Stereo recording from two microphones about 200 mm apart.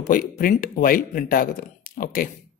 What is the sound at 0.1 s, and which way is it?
Speech, 45° left (ahead or behind).